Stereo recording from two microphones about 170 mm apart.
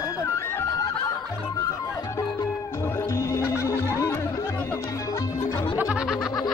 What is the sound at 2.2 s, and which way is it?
Music, 20° left (ahead or behind).